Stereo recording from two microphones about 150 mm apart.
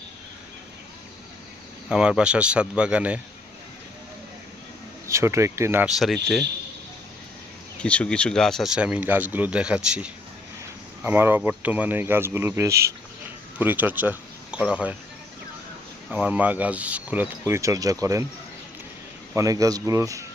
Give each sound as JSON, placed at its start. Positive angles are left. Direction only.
{"t": 1.9, "sound": "speech", "side_deg": -5}
{"t": 5.0, "sound": "speech", "side_deg": -20}
{"t": 5.9, "sound": "speech", "side_deg": 0}
{"t": 7.8, "sound": "speech", "side_deg": 10}
{"t": 16.0, "sound": "speech", "side_deg": -10}
{"t": 19.3, "sound": "speech", "side_deg": -20}